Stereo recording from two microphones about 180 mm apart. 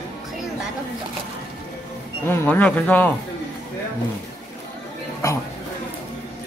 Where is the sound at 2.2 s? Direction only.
10° left (ahead or behind).